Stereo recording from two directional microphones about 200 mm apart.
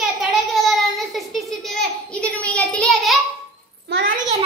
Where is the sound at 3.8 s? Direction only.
50° right (ahead or behind).